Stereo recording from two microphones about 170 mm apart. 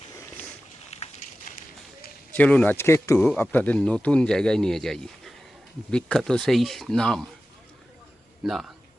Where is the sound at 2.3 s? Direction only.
10° left (ahead or behind).